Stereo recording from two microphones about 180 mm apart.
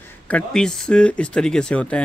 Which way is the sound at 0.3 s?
5° left (ahead or behind).